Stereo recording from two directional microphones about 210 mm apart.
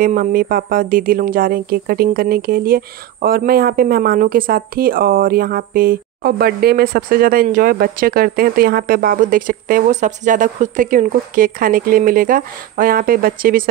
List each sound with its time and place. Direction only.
0.0 s speech: 40° right (ahead or behind)